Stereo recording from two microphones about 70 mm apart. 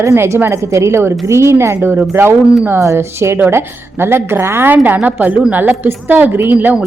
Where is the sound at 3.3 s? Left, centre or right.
Right.